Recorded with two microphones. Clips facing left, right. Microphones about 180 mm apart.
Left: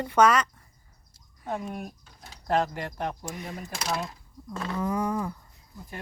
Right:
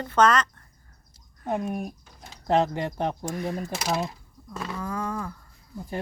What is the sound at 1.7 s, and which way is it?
Speech, 15° right (ahead or behind).